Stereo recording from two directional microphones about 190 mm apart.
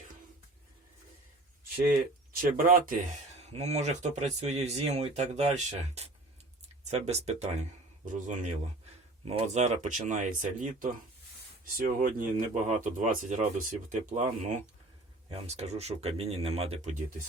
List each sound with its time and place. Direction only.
2.3 s speech: 50° right (ahead or behind)
11.9 s speech: 45° right (ahead or behind)